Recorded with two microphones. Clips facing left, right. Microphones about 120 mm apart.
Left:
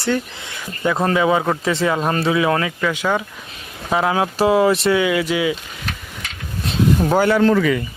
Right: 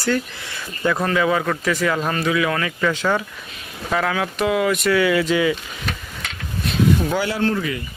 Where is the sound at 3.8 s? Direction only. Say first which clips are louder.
Left 3 dB; 25° left (ahead or behind).